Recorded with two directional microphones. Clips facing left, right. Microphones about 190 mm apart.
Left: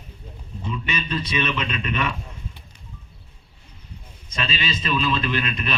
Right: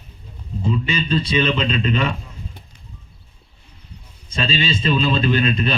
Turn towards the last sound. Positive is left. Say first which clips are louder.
# right 7 dB
turn(degrees=-30)  # may be behind; listen again after turning